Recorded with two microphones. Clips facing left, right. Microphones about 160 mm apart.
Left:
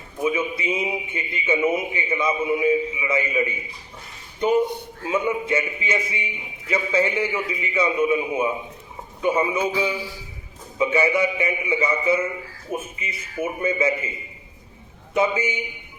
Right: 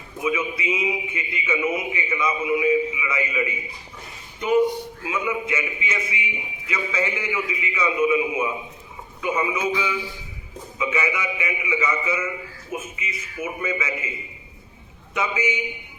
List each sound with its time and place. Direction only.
0.2 s a man's voice: 30° left (ahead or behind)
15.1 s a man's voice: 30° left (ahead or behind)